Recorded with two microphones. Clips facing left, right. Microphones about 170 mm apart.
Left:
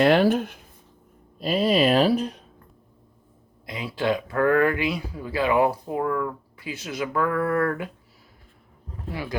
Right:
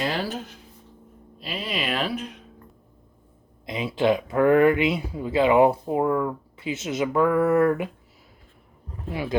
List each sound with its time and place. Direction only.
0.0 s speech: 60° left (ahead or behind)
1.4 s speech: 40° left (ahead or behind)
3.7 s speech: 20° right (ahead or behind)
9.0 s speech: 20° right (ahead or behind)